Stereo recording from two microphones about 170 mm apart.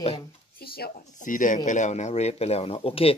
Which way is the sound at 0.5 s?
65° left (ahead or behind).